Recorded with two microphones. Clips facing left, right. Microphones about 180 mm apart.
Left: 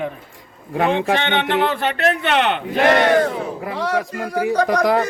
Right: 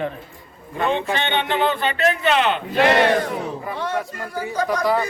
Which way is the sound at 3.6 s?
85° left.